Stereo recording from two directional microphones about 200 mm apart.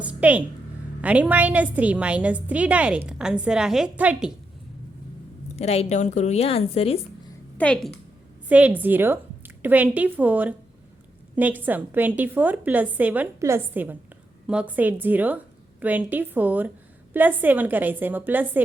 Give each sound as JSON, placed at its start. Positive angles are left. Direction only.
{"t": 0.0, "sound": "a sound", "side_deg": -5}
{"t": 1.0, "sound": "a woman's voice", "side_deg": -5}
{"t": 5.5, "sound": "a woman's voice", "side_deg": 30}
{"t": 7.6, "sound": "a woman's voice", "side_deg": 5}
{"t": 8.4, "sound": "a woman's voice", "side_deg": -5}